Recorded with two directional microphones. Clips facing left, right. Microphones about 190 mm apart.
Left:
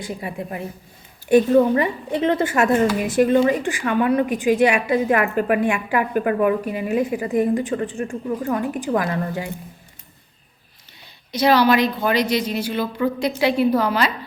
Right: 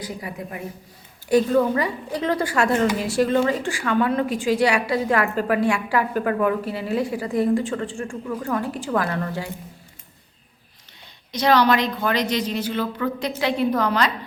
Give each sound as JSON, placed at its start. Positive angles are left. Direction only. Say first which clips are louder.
{"t": 0.0, "sound": "a woman's voice", "louder": "left 3 dB", "side_deg": 25}
{"t": 11.3, "sound": "a woman's voice", "louder": "left 2 dB", "side_deg": 10}